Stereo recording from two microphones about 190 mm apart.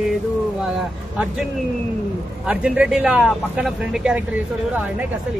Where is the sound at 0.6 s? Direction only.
Centre (ahead or behind).